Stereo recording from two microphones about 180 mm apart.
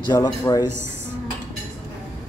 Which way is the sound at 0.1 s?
20° left (ahead or behind).